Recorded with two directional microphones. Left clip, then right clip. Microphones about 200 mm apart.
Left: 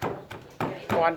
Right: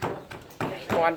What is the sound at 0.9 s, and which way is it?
Bouncing, 50° left (ahead or behind).